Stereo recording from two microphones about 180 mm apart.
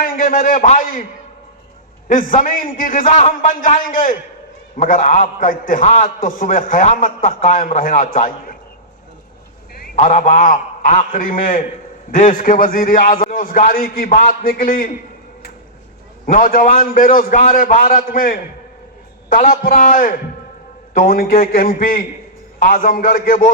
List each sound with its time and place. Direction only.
0.0 s a man's voice: 45° left (ahead or behind)
2.9 s a man's voice: 45° left (ahead or behind)
9.9 s a man's voice: 40° left (ahead or behind)
16.2 s a man's voice: 50° left (ahead or behind)